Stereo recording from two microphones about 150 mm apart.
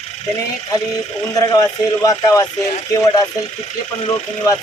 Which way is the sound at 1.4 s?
25° left (ahead or behind).